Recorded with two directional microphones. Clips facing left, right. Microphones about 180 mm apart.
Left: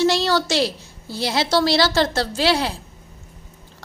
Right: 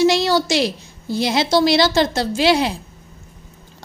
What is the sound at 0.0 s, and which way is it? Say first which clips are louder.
A woman's voice: right 3 dB; 15° right (ahead or behind).